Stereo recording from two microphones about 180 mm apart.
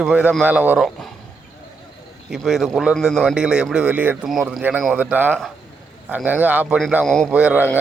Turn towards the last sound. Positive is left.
turn(degrees=-10)  # may be behind; listen again after turning